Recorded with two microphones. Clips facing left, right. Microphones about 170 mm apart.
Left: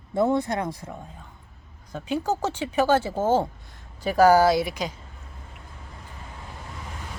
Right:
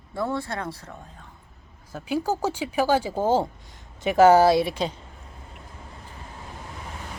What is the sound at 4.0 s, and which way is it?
Speech, 25° right (ahead or behind).